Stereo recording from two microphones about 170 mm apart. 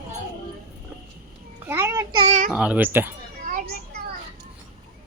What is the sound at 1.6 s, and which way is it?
Speech, 15° right (ahead or behind).